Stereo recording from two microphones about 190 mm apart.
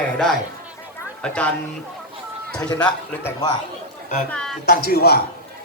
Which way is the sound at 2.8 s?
10° left (ahead or behind).